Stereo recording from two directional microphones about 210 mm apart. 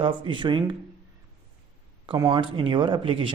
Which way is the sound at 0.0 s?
25° right (ahead or behind).